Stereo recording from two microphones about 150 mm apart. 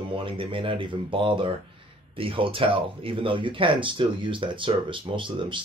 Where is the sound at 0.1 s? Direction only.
35° right (ahead or behind).